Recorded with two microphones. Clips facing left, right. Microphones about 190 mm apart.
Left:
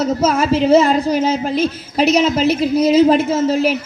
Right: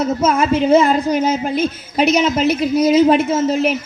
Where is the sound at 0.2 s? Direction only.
30° left (ahead or behind).